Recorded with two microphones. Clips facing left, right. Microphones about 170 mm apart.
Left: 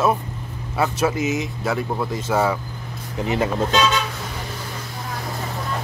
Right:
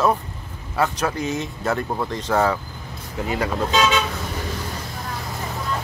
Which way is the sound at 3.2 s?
20° left (ahead or behind).